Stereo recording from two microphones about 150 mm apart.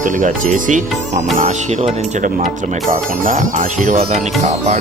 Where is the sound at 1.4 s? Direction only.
45° right (ahead or behind).